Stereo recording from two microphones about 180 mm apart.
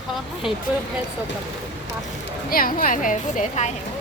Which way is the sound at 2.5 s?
50° left (ahead or behind).